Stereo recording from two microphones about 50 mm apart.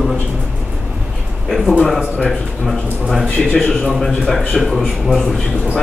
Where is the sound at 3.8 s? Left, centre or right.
Centre.